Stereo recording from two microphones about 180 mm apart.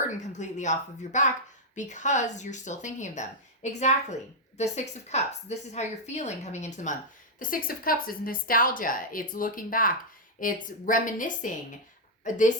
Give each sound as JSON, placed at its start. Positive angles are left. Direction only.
{"t": 0.2, "sound": "a woman's voice", "side_deg": 40}